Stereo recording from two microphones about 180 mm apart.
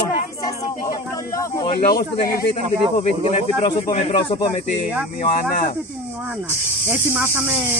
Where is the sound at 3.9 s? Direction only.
35° left (ahead or behind).